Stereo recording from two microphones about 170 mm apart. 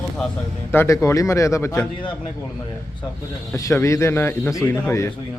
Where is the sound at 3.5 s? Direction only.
15° left (ahead or behind).